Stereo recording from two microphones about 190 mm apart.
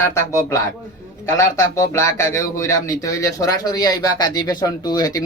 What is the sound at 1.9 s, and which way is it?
Speech, 15° left (ahead or behind).